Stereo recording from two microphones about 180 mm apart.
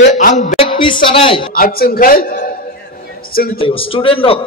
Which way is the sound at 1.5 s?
55° left (ahead or behind).